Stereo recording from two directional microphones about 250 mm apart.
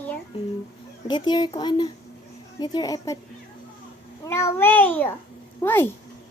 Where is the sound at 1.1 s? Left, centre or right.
Centre.